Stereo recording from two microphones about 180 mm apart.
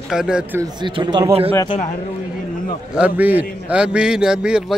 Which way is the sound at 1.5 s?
25° left (ahead or behind).